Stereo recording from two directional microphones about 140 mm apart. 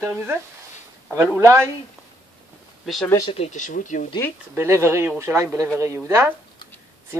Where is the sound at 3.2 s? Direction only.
40° left (ahead or behind).